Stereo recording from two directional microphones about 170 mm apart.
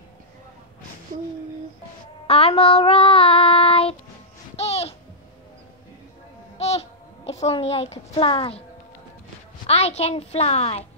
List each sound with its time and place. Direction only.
2.2 s child singing: 35° left (ahead or behind)
4.6 s music: 35° left (ahead or behind)
7.2 s a child's voice: 40° left (ahead or behind)
9.7 s a woman's voice: 35° left (ahead or behind)